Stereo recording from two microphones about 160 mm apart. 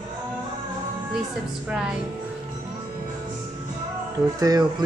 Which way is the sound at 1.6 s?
5° right (ahead or behind).